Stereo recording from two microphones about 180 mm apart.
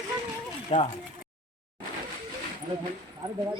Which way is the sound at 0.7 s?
35° left (ahead or behind).